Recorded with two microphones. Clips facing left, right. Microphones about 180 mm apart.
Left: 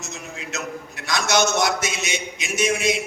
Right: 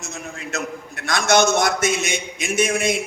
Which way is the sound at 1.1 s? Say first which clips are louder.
Right 4 dB; 50° right (ahead or behind).